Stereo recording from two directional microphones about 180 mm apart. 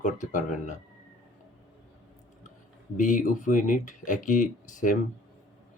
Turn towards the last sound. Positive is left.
turn(degrees=45)  # may be behind; listen again after turning